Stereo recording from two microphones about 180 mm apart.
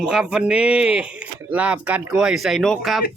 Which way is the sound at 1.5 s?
5° right (ahead or behind).